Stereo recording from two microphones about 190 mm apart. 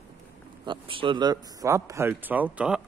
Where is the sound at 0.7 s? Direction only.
25° right (ahead or behind); by 2.8 s 5° right (ahead or behind).